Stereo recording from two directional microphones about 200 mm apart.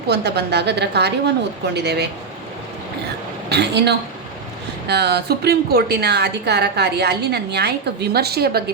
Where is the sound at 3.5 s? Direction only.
55° right (ahead or behind).